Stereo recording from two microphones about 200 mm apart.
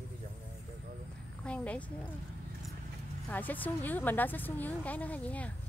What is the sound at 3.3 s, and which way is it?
A woman's voice, 10° left (ahead or behind).